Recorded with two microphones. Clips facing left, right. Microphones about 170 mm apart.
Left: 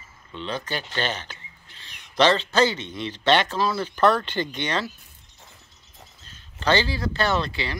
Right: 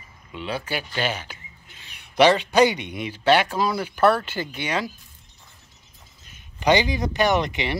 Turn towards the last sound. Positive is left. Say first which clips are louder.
# right 3 dB
turn(degrees=-20)  # may be behind; listen again after turning